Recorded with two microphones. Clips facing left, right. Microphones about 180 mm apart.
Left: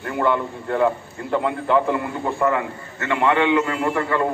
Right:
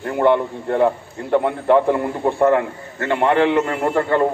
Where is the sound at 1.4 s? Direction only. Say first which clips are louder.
Right 3 dB; 45° right (ahead or behind).